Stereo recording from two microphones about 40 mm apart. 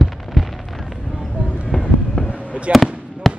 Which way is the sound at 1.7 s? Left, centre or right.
Centre.